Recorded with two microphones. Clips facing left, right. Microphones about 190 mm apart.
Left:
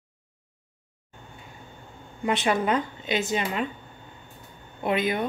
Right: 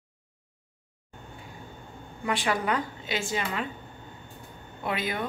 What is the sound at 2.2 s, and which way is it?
Speech, 20° left (ahead or behind).